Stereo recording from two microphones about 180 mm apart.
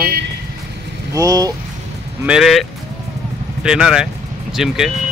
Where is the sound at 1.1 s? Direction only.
20° right (ahead or behind).